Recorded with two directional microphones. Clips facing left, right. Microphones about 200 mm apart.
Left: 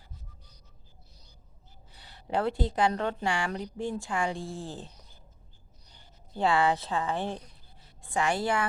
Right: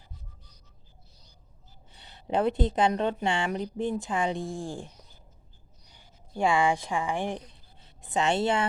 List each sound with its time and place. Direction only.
1.9 s a woman's voice: 25° right (ahead or behind)
5.9 s speech: 10° right (ahead or behind)